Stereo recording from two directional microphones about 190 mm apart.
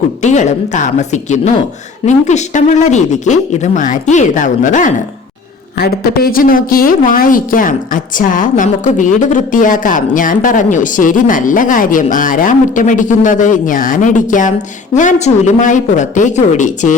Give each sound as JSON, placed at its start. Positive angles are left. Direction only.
{"t": 0.2, "sound": "speech", "side_deg": 40}
{"t": 5.7, "sound": "a woman's voice", "side_deg": 55}